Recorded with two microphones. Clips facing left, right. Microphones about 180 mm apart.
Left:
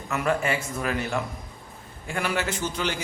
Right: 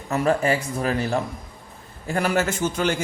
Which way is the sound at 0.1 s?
35° right (ahead or behind).